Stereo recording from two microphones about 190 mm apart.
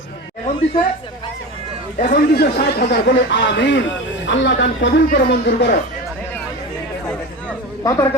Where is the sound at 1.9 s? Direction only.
45° left (ahead or behind); by 5.0 s 75° left (ahead or behind).